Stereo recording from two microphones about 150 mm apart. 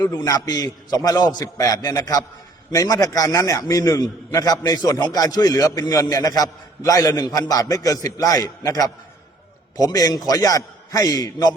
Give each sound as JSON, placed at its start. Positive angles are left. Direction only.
{"t": 0.2, "sound": "a man's voice", "side_deg": 25}